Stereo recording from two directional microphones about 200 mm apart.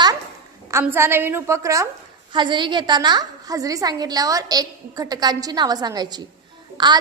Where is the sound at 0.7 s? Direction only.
15° right (ahead or behind).